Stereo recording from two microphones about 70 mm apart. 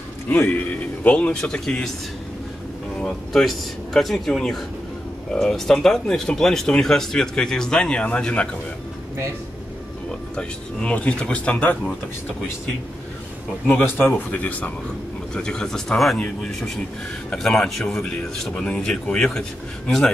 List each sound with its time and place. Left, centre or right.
0.3 s speech: left
3.0 s speech: centre
10.3 s speech: centre
13.7 s speech: left
15.3 s speech: centre